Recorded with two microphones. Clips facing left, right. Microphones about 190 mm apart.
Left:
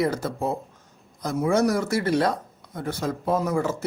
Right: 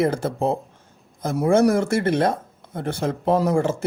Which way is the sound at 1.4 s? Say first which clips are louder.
Right 5 dB; 55° right (ahead or behind).